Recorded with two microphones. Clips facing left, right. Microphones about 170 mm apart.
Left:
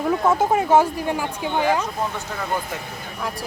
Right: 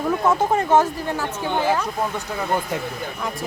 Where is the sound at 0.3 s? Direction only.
10° left (ahead or behind).